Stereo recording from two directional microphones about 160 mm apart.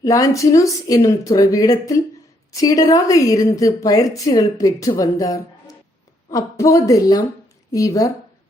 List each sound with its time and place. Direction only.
0.0 s a woman's voice: 20° left (ahead or behind)